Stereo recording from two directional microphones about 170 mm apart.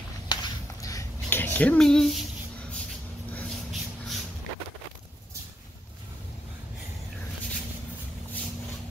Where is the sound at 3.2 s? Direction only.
10° left (ahead or behind).